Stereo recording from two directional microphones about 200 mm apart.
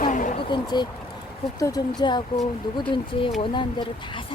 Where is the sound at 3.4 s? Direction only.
25° left (ahead or behind).